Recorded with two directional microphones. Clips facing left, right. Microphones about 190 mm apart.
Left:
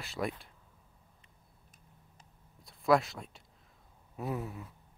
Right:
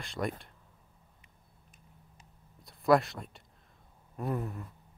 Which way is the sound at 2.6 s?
Centre (ahead or behind).